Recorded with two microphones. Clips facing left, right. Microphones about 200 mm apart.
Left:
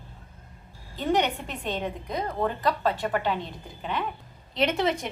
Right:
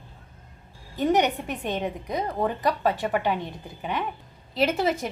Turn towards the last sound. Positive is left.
turn(degrees=-5)  # may be behind; listen again after turning